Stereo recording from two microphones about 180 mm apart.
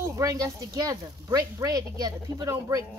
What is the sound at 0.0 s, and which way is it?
Speech, 20° right (ahead or behind).